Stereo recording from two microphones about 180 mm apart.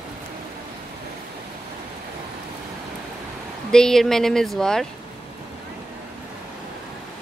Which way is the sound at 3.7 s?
5° left (ahead or behind).